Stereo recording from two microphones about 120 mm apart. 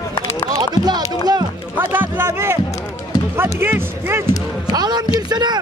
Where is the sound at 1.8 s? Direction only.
15° right (ahead or behind).